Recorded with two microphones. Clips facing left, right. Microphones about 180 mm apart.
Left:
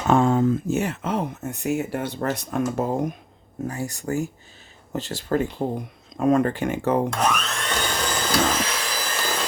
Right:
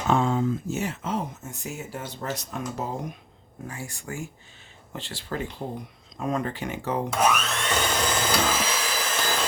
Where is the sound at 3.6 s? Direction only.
40° left (ahead or behind).